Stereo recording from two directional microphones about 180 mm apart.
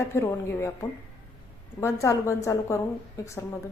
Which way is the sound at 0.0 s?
15° left (ahead or behind).